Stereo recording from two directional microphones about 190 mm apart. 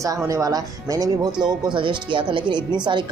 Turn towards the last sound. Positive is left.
turn(degrees=-25)  # may be behind; listen again after turning